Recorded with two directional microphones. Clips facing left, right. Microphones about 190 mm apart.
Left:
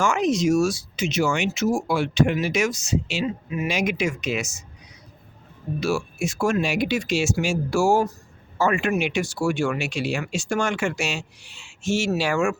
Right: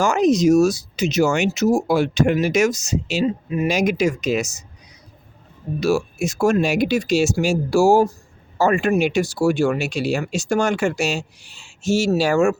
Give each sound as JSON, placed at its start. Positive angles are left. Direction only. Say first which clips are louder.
{"t": 0.0, "sound": "speech", "louder": "right 5 dB", "side_deg": -40}
{"t": 5.8, "sound": "speech", "louder": "right 5 dB", "side_deg": -40}